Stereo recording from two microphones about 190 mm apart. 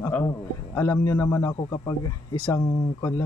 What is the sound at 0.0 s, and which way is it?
A man's voice, 10° left (ahead or behind).